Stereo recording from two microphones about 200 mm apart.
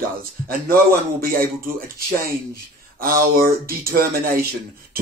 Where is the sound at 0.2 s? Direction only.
45° right (ahead or behind).